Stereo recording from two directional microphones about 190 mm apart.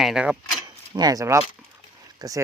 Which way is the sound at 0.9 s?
20° right (ahead or behind).